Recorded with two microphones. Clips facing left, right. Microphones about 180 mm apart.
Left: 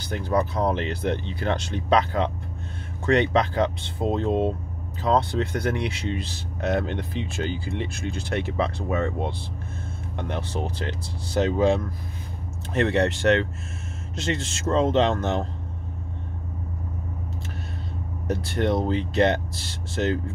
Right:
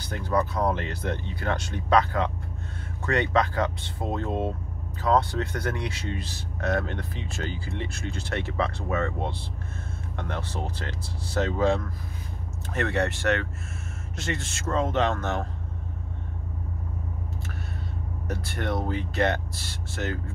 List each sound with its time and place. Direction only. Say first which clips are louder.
0.0 s speech: left 2 dB; 25° left (ahead or behind)
18.2 s speech: left 7 dB; 20° left (ahead or behind)